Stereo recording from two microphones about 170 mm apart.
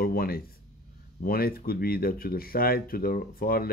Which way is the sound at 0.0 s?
60° left (ahead or behind).